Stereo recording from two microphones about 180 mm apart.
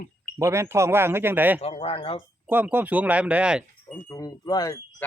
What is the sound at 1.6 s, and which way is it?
Speech, 35° left (ahead or behind).